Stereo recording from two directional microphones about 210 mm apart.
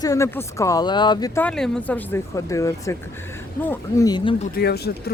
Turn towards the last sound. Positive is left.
turn(degrees=50)  # may be behind; listen again after turning